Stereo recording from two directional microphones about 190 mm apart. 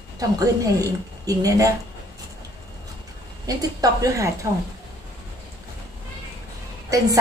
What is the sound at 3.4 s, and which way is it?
Speech, 20° right (ahead or behind).